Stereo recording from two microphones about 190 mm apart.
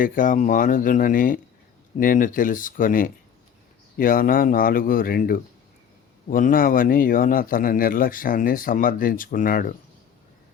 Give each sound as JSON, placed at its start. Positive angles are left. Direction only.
{"t": 0.0, "sound": "a man's voice", "side_deg": 45}